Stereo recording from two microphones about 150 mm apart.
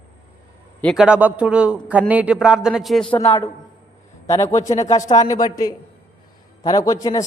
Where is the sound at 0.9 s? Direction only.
5° right (ahead or behind).